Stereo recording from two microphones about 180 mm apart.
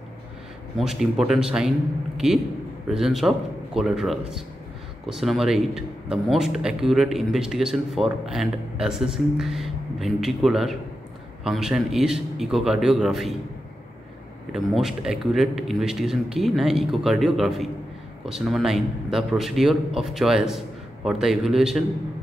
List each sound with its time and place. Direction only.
0.7 s a man's voice: centre (ahead or behind)
14.5 s speech: centre (ahead or behind)